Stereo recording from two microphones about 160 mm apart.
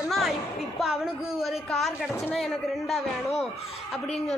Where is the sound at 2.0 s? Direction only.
15° left (ahead or behind).